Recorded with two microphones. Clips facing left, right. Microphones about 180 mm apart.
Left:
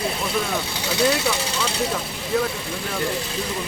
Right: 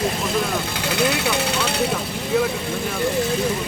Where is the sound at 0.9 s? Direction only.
60° right (ahead or behind).